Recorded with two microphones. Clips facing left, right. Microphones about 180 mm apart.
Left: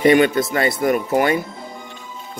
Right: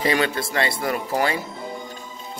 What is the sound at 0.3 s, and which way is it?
Speech, 30° right (ahead or behind).